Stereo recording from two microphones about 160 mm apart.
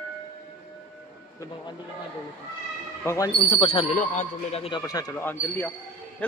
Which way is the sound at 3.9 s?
50° left (ahead or behind).